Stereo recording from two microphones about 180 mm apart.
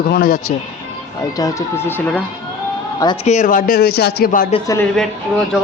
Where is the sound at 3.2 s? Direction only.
45° left (ahead or behind); by 4.3 s 60° left (ahead or behind).